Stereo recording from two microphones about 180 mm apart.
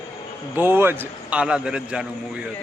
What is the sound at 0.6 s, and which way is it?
A man's voice, 10° right (ahead or behind).